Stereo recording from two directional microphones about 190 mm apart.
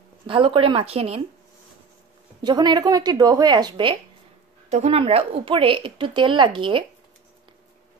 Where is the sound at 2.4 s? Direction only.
20° right (ahead or behind).